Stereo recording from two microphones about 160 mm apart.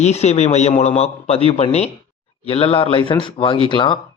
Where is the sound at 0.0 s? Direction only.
45° left (ahead or behind).